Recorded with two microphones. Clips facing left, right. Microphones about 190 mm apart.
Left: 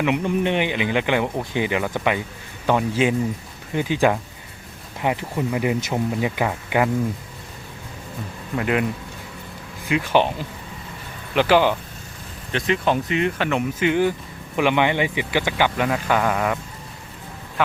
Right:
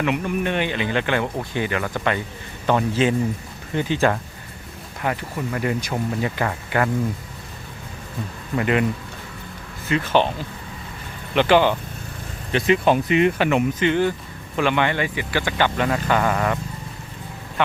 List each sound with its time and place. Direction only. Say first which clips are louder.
0.0 s speech: left 2 dB; 20° left (ahead or behind)
8.5 s speech: right 1 dB; centre (ahead or behind)
9.9 s speech: even; 15° left (ahead or behind)
12.5 s speech: right 3 dB; 5° right (ahead or behind)
13.7 s speech: even; 10° left (ahead or behind)